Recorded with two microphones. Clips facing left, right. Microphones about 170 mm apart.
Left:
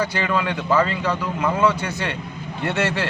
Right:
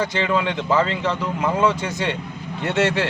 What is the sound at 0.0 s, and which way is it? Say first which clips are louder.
A man's voice: right 1 dB; 20° right (ahead or behind).